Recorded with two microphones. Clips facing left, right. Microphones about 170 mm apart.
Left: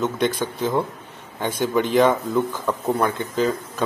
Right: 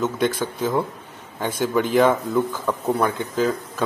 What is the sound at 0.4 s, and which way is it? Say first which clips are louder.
Speech: even; 5° right (ahead or behind).